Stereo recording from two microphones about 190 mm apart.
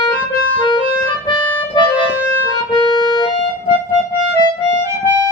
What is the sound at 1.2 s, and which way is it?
Music, 25° left (ahead or behind).